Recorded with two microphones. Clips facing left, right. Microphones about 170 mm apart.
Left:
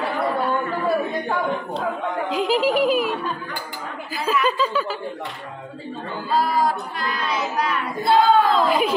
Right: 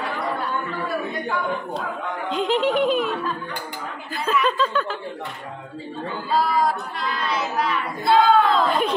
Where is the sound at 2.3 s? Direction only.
5° left (ahead or behind).